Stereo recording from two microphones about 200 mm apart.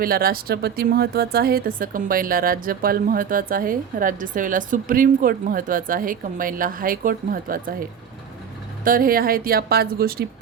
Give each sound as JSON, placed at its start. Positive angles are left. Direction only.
{"t": 0.0, "sound": "speech", "side_deg": -45}
{"t": 8.8, "sound": "speech", "side_deg": -45}